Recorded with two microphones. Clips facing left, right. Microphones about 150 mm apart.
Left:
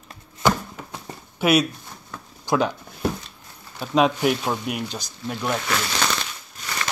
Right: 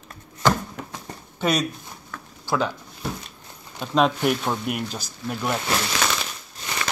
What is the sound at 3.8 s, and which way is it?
Speech, 5° left (ahead or behind).